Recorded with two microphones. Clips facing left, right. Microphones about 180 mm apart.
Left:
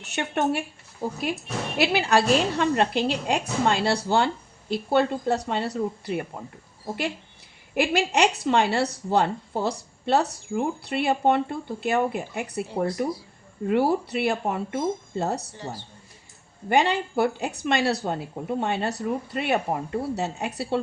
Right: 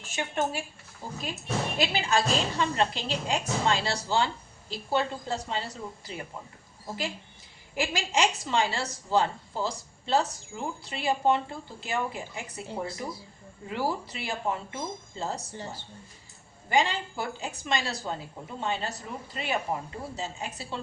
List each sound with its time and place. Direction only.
0.0 s speech: 65° left (ahead or behind)
1.8 s speech: 65° left (ahead or behind)
7.7 s speech: 60° left (ahead or behind)
16.6 s speech: 60° left (ahead or behind)